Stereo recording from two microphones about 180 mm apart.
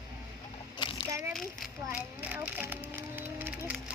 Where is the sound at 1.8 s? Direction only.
5° right (ahead or behind).